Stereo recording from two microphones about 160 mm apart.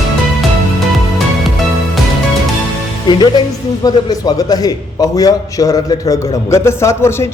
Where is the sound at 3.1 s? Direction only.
25° left (ahead or behind).